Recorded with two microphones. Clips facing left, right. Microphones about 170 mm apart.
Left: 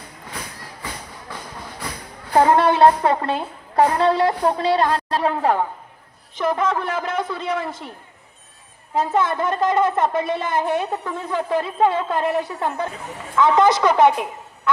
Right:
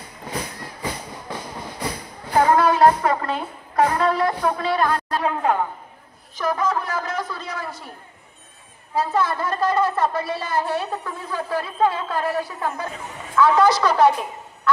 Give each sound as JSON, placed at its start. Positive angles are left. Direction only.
{"t": 2.3, "sound": "a woman's voice", "side_deg": 25}
{"t": 8.9, "sound": "a woman's voice", "side_deg": 20}